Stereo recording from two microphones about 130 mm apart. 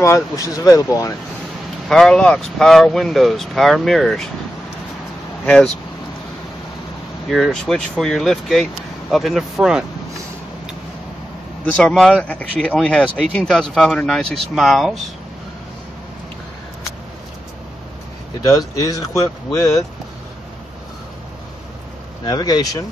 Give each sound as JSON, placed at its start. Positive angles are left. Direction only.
{"t": 0.0, "sound": "speech", "side_deg": 25}
{"t": 1.9, "sound": "speech", "side_deg": 5}
{"t": 5.4, "sound": "speech", "side_deg": 5}
{"t": 7.2, "sound": "speech", "side_deg": 0}
{"t": 11.8, "sound": "speech", "side_deg": 5}
{"t": 18.8, "sound": "speech", "side_deg": 25}
{"t": 22.2, "sound": "speech", "side_deg": 30}